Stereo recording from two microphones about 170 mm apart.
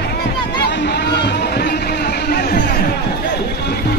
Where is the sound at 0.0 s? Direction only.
75° left (ahead or behind).